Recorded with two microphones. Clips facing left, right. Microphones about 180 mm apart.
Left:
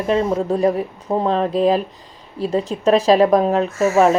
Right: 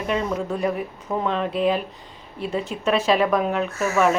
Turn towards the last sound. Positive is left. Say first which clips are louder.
# left 6 dB
turn(degrees=35)  # may be behind; listen again after turning